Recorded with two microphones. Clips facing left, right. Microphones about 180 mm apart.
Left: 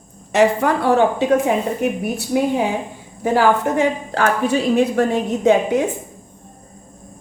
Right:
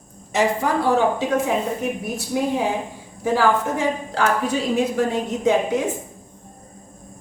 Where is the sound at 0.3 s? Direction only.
65° left (ahead or behind).